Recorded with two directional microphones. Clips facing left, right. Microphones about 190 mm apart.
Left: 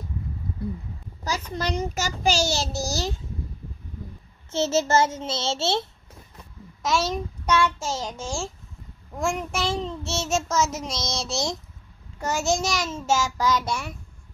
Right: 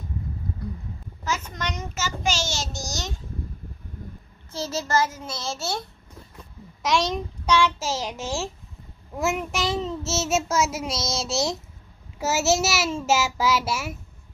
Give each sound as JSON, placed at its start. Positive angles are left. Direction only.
{"t": 1.2, "sound": "child singing", "side_deg": 35}
{"t": 4.5, "sound": "child singing", "side_deg": 25}
{"t": 6.8, "sound": "child singing", "side_deg": 0}
{"t": 12.2, "sound": "a child's voice", "side_deg": -5}